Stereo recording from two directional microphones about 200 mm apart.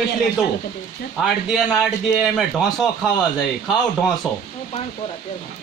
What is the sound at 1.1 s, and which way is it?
Speech, centre (ahead or behind).